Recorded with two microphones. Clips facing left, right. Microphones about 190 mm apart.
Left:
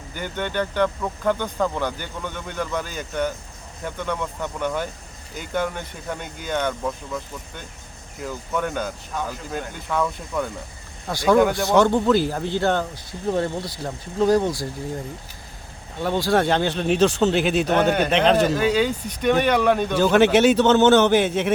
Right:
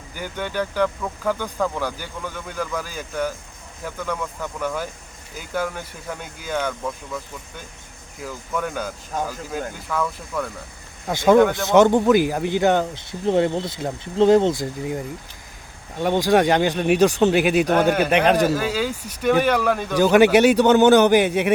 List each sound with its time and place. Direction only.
0.2 s speech: 5° right (ahead or behind)
8.2 s speech: 5° right (ahead or behind)
9.1 s speech: 45° right (ahead or behind)
9.5 s speech: 5° right (ahead or behind)
11.1 s speech: 20° right (ahead or behind)
16.0 s speech: 15° right (ahead or behind)